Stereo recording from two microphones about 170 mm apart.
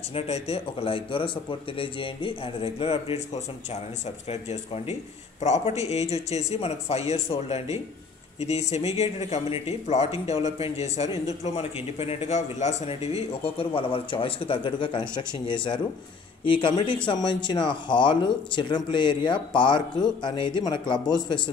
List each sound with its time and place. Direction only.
0.1 s a man's voice: 35° left (ahead or behind)
4.3 s a man's voice: 40° left (ahead or behind)